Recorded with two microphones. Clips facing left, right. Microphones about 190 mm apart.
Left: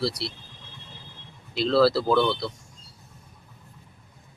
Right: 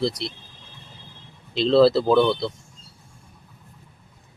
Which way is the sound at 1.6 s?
20° right (ahead or behind).